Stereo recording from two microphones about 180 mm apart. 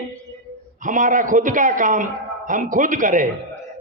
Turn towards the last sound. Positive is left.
turn(degrees=-45)  # may be behind; listen again after turning